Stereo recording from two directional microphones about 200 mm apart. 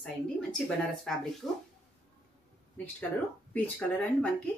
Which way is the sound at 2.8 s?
10° left (ahead or behind).